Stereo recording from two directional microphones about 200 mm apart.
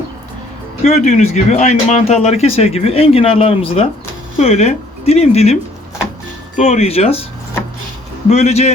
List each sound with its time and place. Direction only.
0.8 s speech: 35° left (ahead or behind)
6.6 s speech: 30° left (ahead or behind)
8.3 s speech: 35° left (ahead or behind)